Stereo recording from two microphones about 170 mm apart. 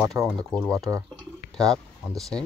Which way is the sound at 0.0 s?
20° right (ahead or behind).